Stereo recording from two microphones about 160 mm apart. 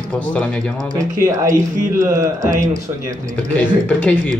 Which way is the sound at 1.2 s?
20° right (ahead or behind).